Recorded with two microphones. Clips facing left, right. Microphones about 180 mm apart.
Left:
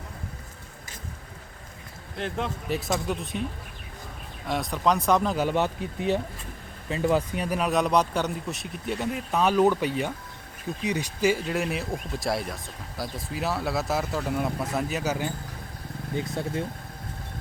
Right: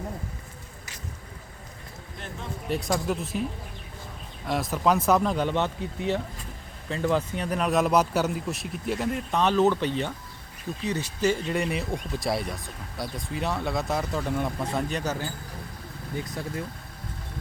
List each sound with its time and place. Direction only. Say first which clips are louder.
2.1 s speech: left 10 dB; 90° left
2.6 s speech: right 3 dB; centre (ahead or behind)
4.4 s speech: right 1 dB; centre (ahead or behind)
16.1 s speech: left 3 dB; 25° left (ahead or behind)